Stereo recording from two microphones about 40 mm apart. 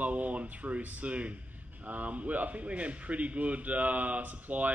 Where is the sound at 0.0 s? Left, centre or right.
Right.